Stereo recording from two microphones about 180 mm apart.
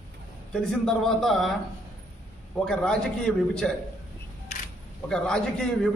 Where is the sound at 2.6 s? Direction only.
5° left (ahead or behind).